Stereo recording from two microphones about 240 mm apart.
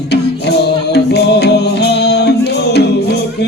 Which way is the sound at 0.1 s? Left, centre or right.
Left.